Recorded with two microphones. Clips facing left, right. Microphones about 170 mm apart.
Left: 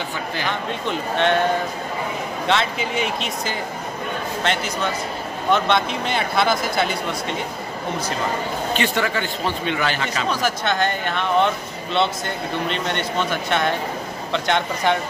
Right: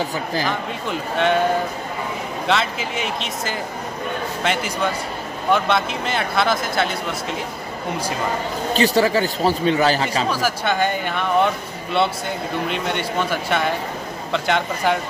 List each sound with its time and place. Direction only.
0.5 s speech: 5° right (ahead or behind)
2.4 s a man's voice: centre (ahead or behind)
8.7 s speech: 35° right (ahead or behind)
10.3 s speech: 10° right (ahead or behind)